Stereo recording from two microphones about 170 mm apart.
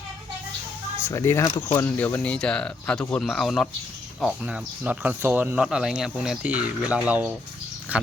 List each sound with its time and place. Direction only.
1.0 s speech: 15° left (ahead or behind); by 8.1 s 10° right (ahead or behind)